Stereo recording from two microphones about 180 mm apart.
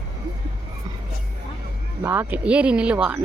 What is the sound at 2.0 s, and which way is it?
Speech, 10° right (ahead or behind).